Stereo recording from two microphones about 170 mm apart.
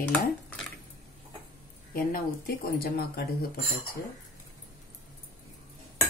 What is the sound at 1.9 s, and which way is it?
Speech, 55° left (ahead or behind).